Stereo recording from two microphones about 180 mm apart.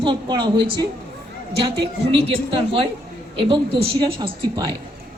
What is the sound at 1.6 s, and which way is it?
A woman's voice, 30° right (ahead or behind).